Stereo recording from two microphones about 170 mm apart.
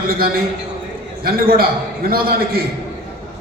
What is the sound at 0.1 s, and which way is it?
A man's voice, 60° right (ahead or behind).